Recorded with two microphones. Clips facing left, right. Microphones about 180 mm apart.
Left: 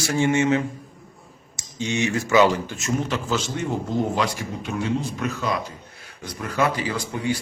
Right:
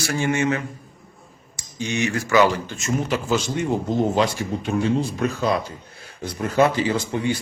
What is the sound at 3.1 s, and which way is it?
Speech, 10° right (ahead or behind).